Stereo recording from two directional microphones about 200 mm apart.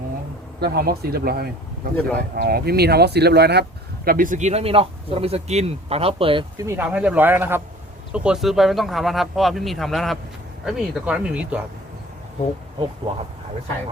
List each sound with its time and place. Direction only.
0.6 s speech: 50° right (ahead or behind); by 6.4 s 25° right (ahead or behind)
6.6 s speech: 10° right (ahead or behind)